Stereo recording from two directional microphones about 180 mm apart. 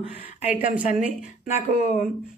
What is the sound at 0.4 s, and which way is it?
Speech, 40° left (ahead or behind).